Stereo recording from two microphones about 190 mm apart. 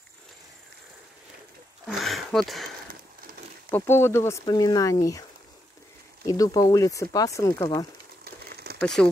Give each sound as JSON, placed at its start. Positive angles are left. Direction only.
{"t": 1.9, "sound": "speech", "side_deg": 0}
{"t": 3.7, "sound": "speech", "side_deg": 10}
{"t": 6.2, "sound": "speech", "side_deg": 20}
{"t": 8.2, "sound": "a sound", "side_deg": -55}
{"t": 8.8, "sound": "speech", "side_deg": 5}